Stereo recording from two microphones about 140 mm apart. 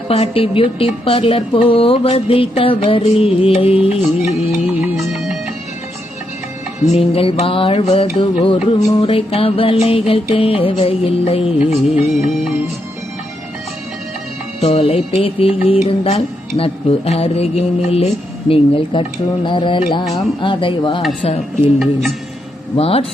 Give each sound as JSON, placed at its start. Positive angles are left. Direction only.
{"t": 0.1, "sound": "a woman's voice", "side_deg": 45}
{"t": 4.6, "sound": "music", "side_deg": 0}
{"t": 6.9, "sound": "a woman's voice", "side_deg": 45}
{"t": 14.6, "sound": "a woman's voice", "side_deg": 45}
{"t": 22.8, "sound": "speech", "side_deg": 45}